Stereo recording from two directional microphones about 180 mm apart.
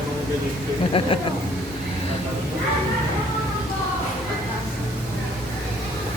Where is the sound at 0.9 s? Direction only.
30° left (ahead or behind).